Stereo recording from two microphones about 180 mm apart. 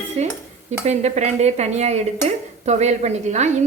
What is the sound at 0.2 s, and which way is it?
Speech, 35° right (ahead or behind).